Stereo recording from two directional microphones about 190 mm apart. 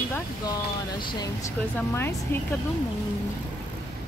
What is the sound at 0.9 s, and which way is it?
Speech, 25° left (ahead or behind).